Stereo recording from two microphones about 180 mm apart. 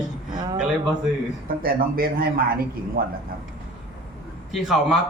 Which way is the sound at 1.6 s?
55° right (ahead or behind).